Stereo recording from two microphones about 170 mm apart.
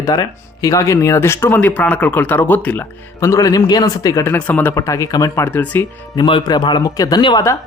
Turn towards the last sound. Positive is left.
turn(degrees=20)  # may be behind; listen again after turning